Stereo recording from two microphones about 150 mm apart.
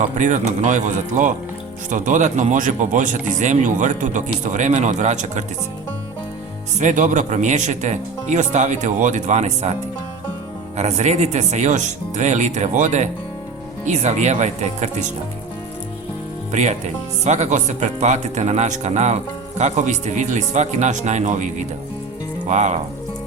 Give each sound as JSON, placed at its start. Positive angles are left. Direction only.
{"t": 0.0, "sound": "speech", "side_deg": -55}
{"t": 6.7, "sound": "speech", "side_deg": -55}
{"t": 10.8, "sound": "speech", "side_deg": -45}
{"t": 16.5, "sound": "speech", "side_deg": -50}
{"t": 22.4, "sound": "speech", "side_deg": -50}